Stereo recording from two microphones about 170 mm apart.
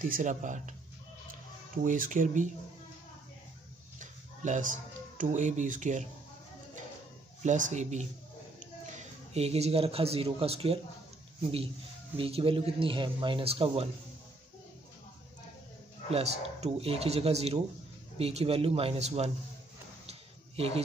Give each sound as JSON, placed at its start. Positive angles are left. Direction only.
{"t": 0.0, "sound": "speech", "side_deg": -50}
{"t": 1.9, "sound": "speech", "side_deg": -50}
{"t": 4.0, "sound": "speech", "side_deg": -45}
{"t": 7.4, "sound": "a man's voice", "side_deg": -45}
{"t": 12.2, "sound": "a man's voice", "side_deg": -35}
{"t": 16.1, "sound": "a man's voice", "side_deg": -40}
{"t": 20.1, "sound": "a sound", "side_deg": -35}